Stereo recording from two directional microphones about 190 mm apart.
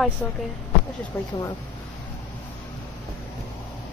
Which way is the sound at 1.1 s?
15° left (ahead or behind).